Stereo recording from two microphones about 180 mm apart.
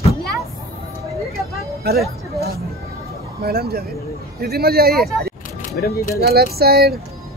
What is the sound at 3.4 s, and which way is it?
Speech, 60° right (ahead or behind).